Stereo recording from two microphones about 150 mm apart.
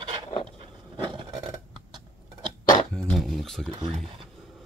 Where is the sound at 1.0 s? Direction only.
30° right (ahead or behind).